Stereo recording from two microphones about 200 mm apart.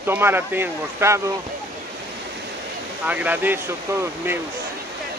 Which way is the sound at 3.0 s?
10° right (ahead or behind).